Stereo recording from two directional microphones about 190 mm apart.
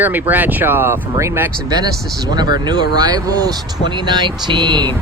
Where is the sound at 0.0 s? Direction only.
10° right (ahead or behind).